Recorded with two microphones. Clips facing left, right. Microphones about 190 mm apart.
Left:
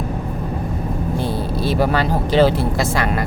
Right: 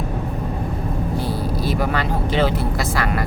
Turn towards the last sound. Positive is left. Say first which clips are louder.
# left 5 dB
turn(degrees=35)  # may be behind; listen again after turning